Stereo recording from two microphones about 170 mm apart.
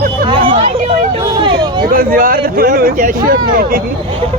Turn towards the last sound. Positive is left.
turn(degrees=-60)  # may be behind; listen again after turning